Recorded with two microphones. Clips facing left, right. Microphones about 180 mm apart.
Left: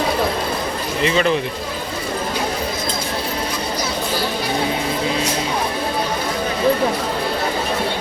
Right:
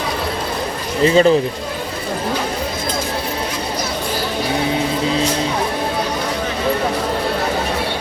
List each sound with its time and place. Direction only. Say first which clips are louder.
1.0 s speech: right 6 dB; 35° right (ahead or behind)